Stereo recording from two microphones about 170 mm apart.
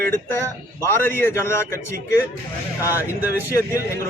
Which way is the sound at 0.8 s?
15° left (ahead or behind).